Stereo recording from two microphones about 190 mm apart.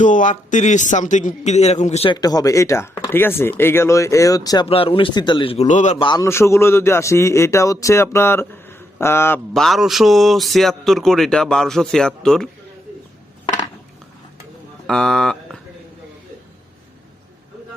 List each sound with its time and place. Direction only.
0.0 s a man's voice: 40° left (ahead or behind)
2.1 s a man's voice: 20° left (ahead or behind)
4.6 s a man's voice: 30° left (ahead or behind)
6.0 s a man's voice: 20° left (ahead or behind); by 12.5 s 5° left (ahead or behind)
13.4 s a sound: 35° left (ahead or behind)
14.8 s speech: 5° left (ahead or behind)